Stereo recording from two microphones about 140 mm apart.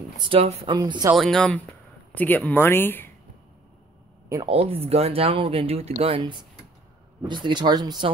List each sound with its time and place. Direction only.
0.2 s speech: 45° right (ahead or behind)
0.7 s speech: 30° right (ahead or behind)
1.1 s speech: 5° left (ahead or behind)
4.5 s speech: 45° right (ahead or behind)